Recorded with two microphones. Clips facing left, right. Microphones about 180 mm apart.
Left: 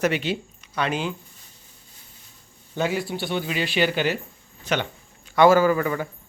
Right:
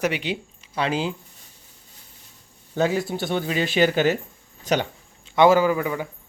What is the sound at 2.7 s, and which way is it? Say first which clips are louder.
Speech: right 3 dB; 40° right (ahead or behind).